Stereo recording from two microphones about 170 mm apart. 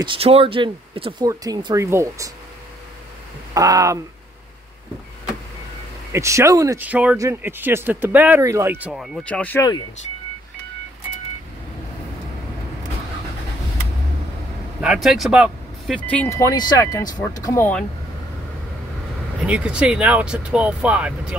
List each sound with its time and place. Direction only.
0.0 s speech: 30° right (ahead or behind); by 2.3 s 15° right (ahead or behind)
3.5 s speech: 20° right (ahead or behind)
6.1 s speech: 15° right (ahead or behind); by 9.6 s 10° left (ahead or behind)
9.6 s speech: 25° left (ahead or behind)
14.8 s speech: 5° right (ahead or behind)
16.0 s speech: 10° left (ahead or behind)
19.4 s speech: 5° right (ahead or behind)